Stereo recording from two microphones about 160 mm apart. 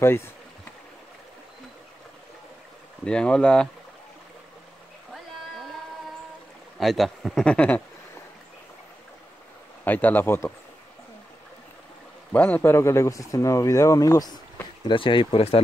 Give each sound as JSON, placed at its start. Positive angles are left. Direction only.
{"t": 0.0, "sound": "speech", "side_deg": 15}
{"t": 3.1, "sound": "speech", "side_deg": 5}
{"t": 5.1, "sound": "a sound", "side_deg": 0}
{"t": 6.8, "sound": "speech", "side_deg": 0}
{"t": 9.8, "sound": "speech", "side_deg": 10}
{"t": 12.3, "sound": "speech", "side_deg": 10}